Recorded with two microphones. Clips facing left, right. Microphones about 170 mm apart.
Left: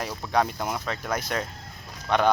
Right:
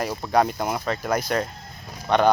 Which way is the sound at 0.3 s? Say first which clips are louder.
Right 4 dB; 5° right (ahead or behind).